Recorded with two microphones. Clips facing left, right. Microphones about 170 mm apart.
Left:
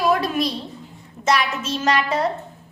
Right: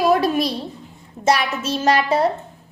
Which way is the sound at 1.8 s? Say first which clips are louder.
Right 4 dB; 35° right (ahead or behind).